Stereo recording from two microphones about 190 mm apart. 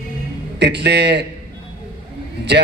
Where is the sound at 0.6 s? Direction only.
65° right (ahead or behind).